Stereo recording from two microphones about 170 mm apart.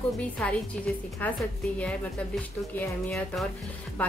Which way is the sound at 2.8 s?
5° left (ahead or behind).